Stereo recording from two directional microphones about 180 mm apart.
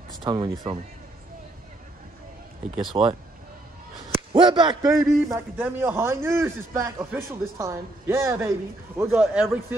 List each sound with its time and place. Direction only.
0.2 s speech: 25° right (ahead or behind)
2.7 s a man's voice: 25° right (ahead or behind)
9.1 s a man's voice: 5° right (ahead or behind)